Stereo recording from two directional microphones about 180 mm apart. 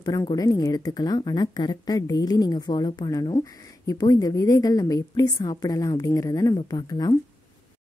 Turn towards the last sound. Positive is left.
turn(degrees=20)  # may be behind; listen again after turning